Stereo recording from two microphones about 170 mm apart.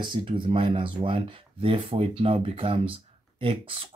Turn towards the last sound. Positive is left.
turn(degrees=-30)  # may be behind; listen again after turning